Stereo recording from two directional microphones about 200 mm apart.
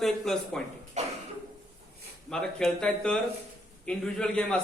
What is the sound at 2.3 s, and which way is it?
A man's voice, 5° left (ahead or behind).